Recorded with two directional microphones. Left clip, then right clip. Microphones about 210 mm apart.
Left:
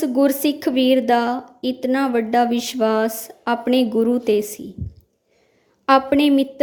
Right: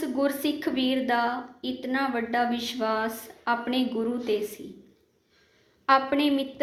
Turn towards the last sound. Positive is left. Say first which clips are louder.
# left 8 dB
turn(degrees=55)  # may be behind; listen again after turning